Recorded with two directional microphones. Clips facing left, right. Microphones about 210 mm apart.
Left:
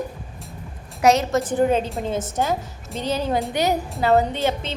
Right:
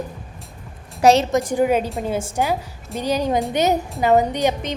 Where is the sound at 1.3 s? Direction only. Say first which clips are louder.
Right 1 dB; 15° right (ahead or behind).